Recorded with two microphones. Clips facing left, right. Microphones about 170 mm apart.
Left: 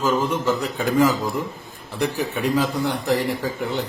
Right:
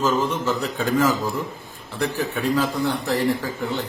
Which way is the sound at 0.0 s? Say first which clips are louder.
Left 1 dB; 10° left (ahead or behind).